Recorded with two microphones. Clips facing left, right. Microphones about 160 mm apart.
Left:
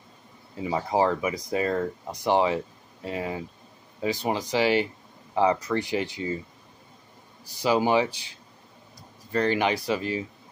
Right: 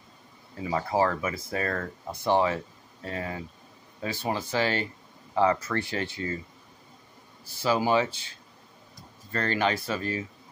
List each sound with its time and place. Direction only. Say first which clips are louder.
0.6 s speech: left 2 dB; 20° left (ahead or behind)
7.4 s speech: left 2 dB; 15° left (ahead or behind)